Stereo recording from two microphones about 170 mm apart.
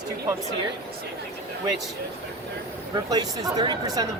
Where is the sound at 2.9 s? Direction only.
25° right (ahead or behind).